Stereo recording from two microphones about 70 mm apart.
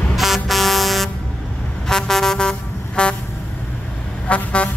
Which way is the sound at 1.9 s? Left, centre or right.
Centre.